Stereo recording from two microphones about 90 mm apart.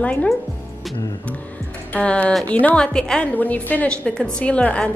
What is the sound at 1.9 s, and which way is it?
A woman's voice, 15° left (ahead or behind).